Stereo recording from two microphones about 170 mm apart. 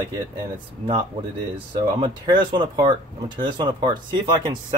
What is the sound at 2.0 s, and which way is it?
Speech, 30° right (ahead or behind).